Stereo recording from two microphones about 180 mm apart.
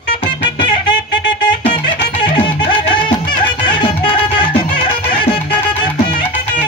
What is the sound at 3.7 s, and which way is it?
Music, 25° left (ahead or behind).